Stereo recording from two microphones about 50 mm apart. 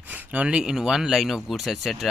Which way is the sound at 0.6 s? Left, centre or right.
Centre.